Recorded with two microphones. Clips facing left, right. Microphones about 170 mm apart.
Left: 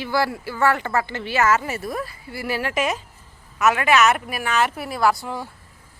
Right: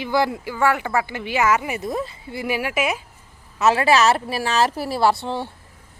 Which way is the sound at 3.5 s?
30° right (ahead or behind).